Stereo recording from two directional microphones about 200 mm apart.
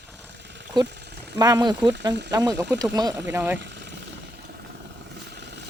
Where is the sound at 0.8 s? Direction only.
60° right (ahead or behind).